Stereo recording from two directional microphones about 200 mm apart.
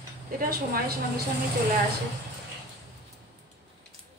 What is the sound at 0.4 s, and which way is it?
Speech, 50° right (ahead or behind).